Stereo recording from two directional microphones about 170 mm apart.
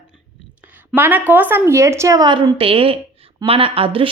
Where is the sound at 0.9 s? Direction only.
10° right (ahead or behind).